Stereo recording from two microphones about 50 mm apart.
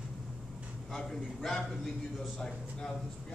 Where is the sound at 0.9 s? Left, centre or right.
Centre.